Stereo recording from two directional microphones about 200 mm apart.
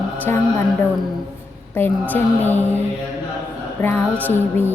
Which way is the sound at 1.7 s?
10° left (ahead or behind).